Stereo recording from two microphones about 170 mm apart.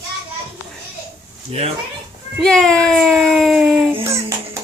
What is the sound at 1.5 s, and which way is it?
Speech, 35° right (ahead or behind).